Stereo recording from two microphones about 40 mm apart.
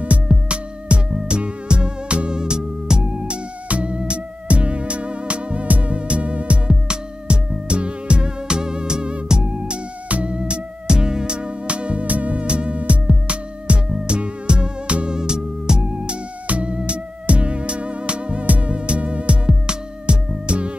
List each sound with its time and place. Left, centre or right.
0.5 s music: right
3.6 s music: right
10.0 s music: right